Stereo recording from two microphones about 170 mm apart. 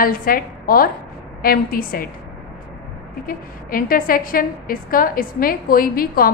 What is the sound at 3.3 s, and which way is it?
A woman's voice, 55° left (ahead or behind).